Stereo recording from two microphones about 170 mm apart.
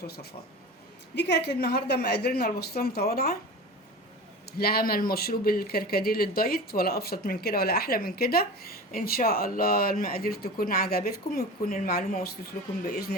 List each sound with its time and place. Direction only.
1.1 s speech: 85° left; by 3.3 s 65° left (ahead or behind)
4.5 s speech: 65° left (ahead or behind)